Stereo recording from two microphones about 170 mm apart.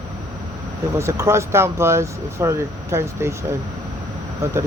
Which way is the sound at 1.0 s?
15° right (ahead or behind).